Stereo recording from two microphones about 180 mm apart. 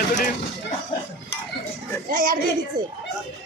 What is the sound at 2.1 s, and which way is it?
Speech, 50° right (ahead or behind).